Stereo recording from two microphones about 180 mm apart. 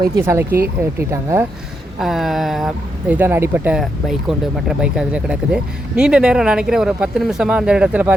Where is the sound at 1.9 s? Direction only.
Centre (ahead or behind).